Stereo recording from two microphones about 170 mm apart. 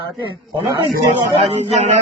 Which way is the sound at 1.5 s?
40° right (ahead or behind).